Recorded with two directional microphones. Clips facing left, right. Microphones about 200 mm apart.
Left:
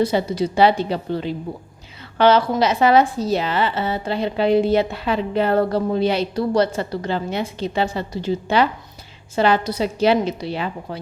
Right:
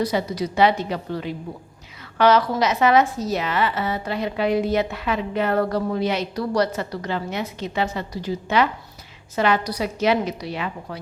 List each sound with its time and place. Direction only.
0.0 s a woman's voice: 25° left (ahead or behind)